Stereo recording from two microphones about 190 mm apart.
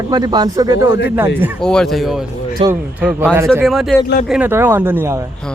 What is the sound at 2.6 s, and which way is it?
Speech, 30° right (ahead or behind).